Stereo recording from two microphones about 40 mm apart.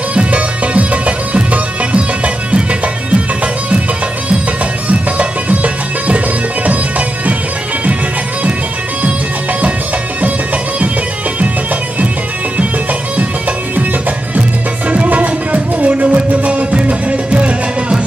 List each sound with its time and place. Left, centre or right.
0.1 s music: right
4.8 s music: right
14.9 s music: right